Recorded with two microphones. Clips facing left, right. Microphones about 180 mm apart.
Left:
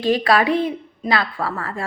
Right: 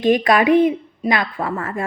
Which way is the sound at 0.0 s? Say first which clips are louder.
Right 2 dB; 20° right (ahead or behind).